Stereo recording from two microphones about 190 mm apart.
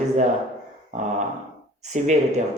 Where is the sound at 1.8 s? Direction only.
40° right (ahead or behind).